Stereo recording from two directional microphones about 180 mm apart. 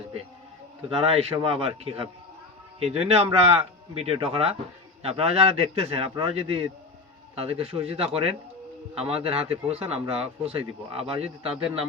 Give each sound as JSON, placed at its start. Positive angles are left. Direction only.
{"t": 1.0, "sound": "speech", "side_deg": -30}